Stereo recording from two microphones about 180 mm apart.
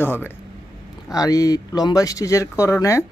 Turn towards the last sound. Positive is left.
turn(degrees=15)  # may be behind; listen again after turning